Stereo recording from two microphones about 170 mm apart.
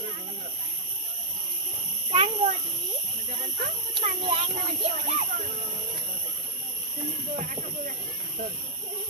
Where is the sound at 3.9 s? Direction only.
35° right (ahead or behind).